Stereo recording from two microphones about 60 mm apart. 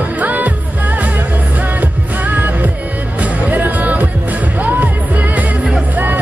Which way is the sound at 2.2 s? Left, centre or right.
Right.